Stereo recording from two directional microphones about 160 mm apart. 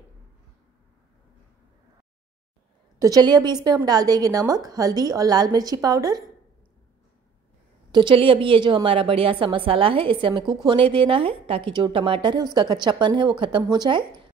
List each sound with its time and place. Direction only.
3.0 s speech: 25° right (ahead or behind)
7.9 s a woman's voice: 30° right (ahead or behind)